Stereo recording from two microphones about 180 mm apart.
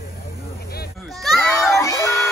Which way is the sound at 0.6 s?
60° left (ahead or behind).